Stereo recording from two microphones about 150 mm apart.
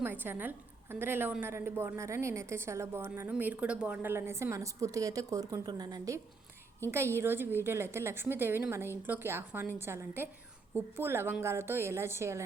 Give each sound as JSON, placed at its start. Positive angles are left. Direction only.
{"t": 0.0, "sound": "a woman's voice", "side_deg": -15}